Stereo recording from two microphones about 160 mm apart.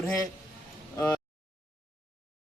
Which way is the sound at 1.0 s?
20° left (ahead or behind).